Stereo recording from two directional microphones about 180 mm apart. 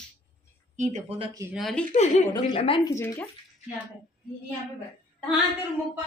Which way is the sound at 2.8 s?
15° left (ahead or behind).